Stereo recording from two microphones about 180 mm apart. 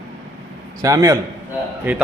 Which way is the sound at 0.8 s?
20° right (ahead or behind).